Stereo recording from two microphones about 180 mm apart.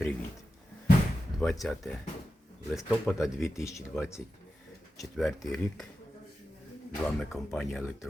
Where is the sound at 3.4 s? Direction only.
15° left (ahead or behind).